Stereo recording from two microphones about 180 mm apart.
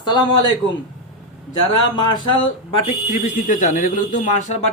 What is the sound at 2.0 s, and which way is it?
Speech, 25° left (ahead or behind).